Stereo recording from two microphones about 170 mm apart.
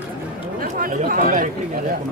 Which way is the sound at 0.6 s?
55° right (ahead or behind).